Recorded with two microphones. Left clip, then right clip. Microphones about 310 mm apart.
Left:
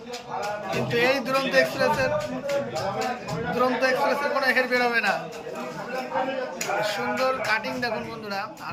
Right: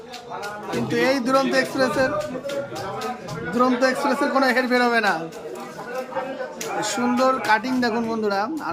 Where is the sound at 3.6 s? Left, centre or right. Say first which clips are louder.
Right 3 dB; right.